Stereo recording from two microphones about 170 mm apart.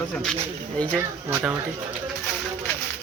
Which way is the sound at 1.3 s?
10° right (ahead or behind).